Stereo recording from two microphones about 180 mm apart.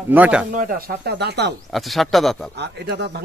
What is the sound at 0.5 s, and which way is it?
Speech, 50° right (ahead or behind).